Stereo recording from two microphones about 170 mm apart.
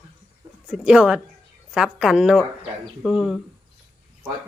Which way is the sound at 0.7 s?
5° right (ahead or behind).